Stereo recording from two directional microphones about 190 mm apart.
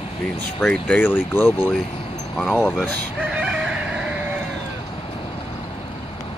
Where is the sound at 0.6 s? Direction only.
5° left (ahead or behind).